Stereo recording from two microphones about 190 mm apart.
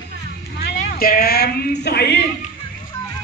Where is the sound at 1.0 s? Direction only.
50° left (ahead or behind).